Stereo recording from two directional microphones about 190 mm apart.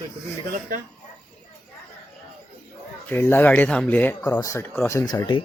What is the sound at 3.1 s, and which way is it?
Speech, 10° left (ahead or behind).